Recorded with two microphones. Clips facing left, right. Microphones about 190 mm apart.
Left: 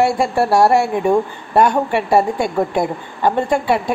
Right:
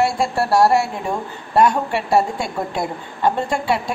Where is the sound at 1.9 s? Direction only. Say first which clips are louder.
Left 3 dB; 60° left (ahead or behind).